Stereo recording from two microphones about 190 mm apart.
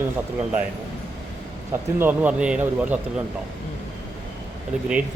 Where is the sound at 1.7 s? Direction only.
10° right (ahead or behind).